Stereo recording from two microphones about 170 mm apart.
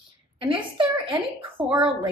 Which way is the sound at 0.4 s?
30° right (ahead or behind).